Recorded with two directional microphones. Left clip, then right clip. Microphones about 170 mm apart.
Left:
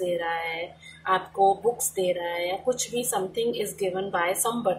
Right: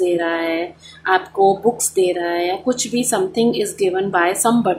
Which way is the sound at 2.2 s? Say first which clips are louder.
Right 7 dB; 40° right (ahead or behind).